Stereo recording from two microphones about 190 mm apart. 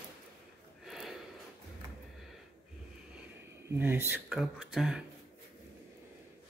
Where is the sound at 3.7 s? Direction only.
10° right (ahead or behind).